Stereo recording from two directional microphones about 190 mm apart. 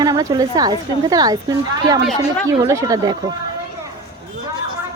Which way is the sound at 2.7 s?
15° right (ahead or behind).